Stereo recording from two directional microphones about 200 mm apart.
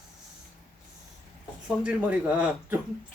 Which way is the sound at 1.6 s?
5° right (ahead or behind).